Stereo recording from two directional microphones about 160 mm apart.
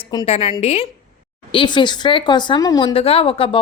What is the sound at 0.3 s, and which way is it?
Speech, 40° left (ahead or behind).